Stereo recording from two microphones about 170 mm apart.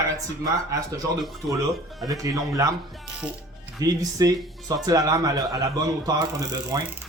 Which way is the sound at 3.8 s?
20° right (ahead or behind).